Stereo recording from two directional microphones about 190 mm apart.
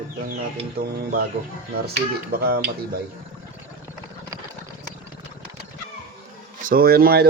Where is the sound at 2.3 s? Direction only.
55° right (ahead or behind).